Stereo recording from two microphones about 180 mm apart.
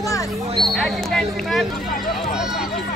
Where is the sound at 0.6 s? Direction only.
Centre (ahead or behind).